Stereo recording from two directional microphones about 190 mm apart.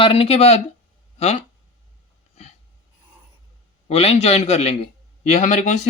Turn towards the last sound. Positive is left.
turn(degrees=40)  # may be behind; listen again after turning